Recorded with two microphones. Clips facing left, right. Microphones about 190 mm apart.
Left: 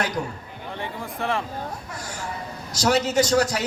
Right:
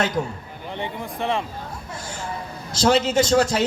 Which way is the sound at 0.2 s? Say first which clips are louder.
Right 3 dB; 25° right (ahead or behind).